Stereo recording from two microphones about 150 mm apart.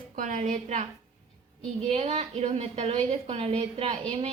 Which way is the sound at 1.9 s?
45° right (ahead or behind).